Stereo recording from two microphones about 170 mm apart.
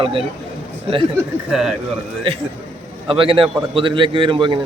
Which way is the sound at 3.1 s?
30° right (ahead or behind).